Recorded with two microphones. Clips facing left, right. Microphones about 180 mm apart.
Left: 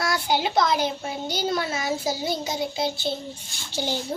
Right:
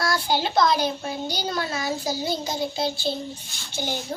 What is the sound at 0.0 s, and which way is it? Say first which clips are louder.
A child's voice: even; 20° left (ahead or behind).